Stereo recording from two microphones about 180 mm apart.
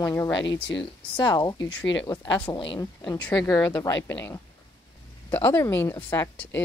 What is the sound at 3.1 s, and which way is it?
Speech, 5° left (ahead or behind).